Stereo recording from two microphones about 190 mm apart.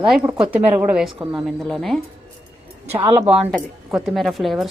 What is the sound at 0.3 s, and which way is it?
Speech, 5° right (ahead or behind).